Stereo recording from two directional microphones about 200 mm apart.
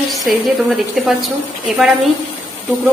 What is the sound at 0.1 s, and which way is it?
A woman's voice, centre (ahead or behind).